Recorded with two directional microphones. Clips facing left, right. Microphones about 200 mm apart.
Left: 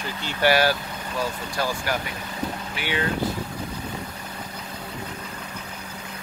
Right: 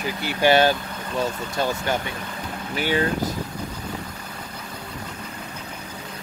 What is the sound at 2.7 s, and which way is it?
Speech, 40° right (ahead or behind).